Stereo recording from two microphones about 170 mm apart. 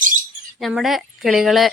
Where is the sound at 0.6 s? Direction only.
Centre (ahead or behind).